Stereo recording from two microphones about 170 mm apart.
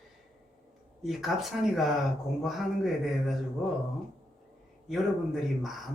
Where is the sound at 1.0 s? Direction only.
Centre (ahead or behind).